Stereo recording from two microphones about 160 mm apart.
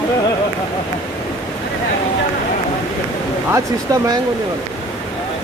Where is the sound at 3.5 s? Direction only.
20° right (ahead or behind).